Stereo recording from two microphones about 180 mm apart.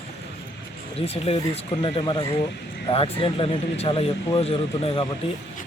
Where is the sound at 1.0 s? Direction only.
35° left (ahead or behind).